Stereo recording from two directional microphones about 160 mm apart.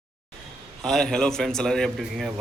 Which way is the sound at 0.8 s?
5° left (ahead or behind).